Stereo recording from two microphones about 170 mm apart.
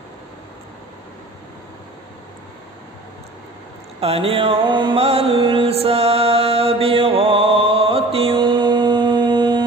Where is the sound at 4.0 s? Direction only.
35° right (ahead or behind).